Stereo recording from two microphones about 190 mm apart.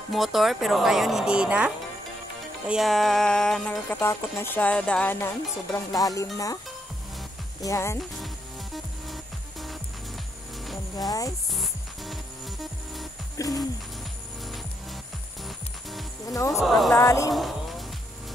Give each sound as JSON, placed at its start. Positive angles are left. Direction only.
{"t": 0.1, "sound": "music", "side_deg": 0}
{"t": 2.7, "sound": "music", "side_deg": 0}
{"t": 5.7, "sound": "speech", "side_deg": 20}
{"t": 7.6, "sound": "speech", "side_deg": 15}
{"t": 8.7, "sound": "music", "side_deg": 0}
{"t": 11.0, "sound": "speech", "side_deg": 20}
{"t": 11.5, "sound": "music", "side_deg": 0}
{"t": 13.4, "sound": "speech", "side_deg": 15}
{"t": 15.4, "sound": "music", "side_deg": 0}
{"t": 16.3, "sound": "speech", "side_deg": 15}
{"t": 16.6, "sound": "music", "side_deg": 0}
{"t": 16.9, "sound": "speech", "side_deg": 15}
{"t": 17.3, "sound": "music", "side_deg": 0}